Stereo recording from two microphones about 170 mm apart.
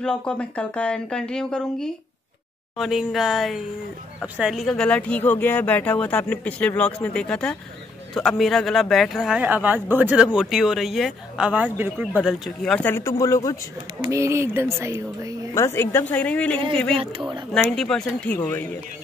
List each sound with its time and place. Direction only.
0.0 s a man's voice: 5° left (ahead or behind); by 12.1 s 10° right (ahead or behind)
12.2 s speech: centre (ahead or behind); by 13.6 s 20° left (ahead or behind)
14.0 s speech: 15° right (ahead or behind)
15.5 s speech: 15° left (ahead or behind)
16.9 s speech: 30° right (ahead or behind)
17.5 s speech: 5° left (ahead or behind)